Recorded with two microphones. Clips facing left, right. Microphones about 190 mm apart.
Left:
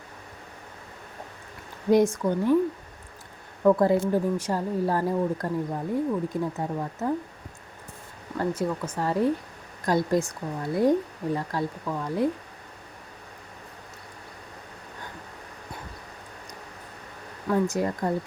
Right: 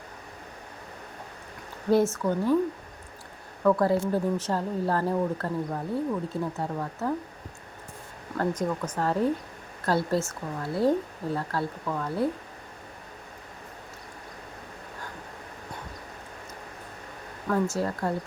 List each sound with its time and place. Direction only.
1.9 s speech: 15° left (ahead or behind)
3.6 s speech: 20° left (ahead or behind)
8.4 s speech: 10° left (ahead or behind)
17.7 s speech: 15° left (ahead or behind)